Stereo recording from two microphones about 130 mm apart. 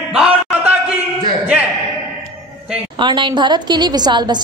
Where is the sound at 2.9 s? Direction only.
35° right (ahead or behind).